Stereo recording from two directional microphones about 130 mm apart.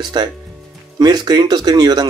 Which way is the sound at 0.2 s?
30° right (ahead or behind).